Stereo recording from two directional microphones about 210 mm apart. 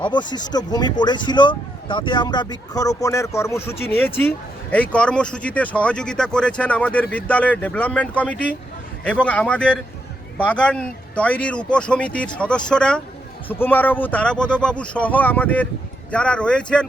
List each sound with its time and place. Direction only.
0.0 s a man's voice: 20° left (ahead or behind); by 16.8 s 5° left (ahead or behind)